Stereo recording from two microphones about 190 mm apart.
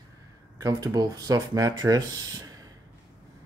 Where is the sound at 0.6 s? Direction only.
20° right (ahead or behind).